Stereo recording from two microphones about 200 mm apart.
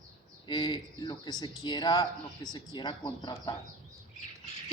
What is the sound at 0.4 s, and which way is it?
Speech, 20° left (ahead or behind).